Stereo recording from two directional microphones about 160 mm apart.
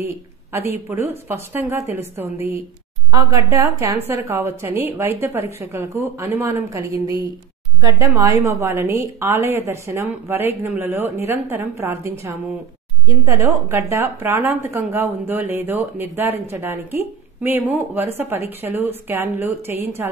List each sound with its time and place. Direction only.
0.0 s a woman's voice: 15° right (ahead or behind)